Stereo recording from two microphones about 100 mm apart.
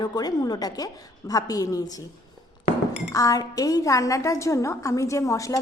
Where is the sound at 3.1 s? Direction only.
35° left (ahead or behind).